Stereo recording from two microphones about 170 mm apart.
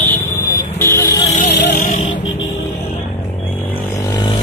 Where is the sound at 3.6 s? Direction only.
25° left (ahead or behind).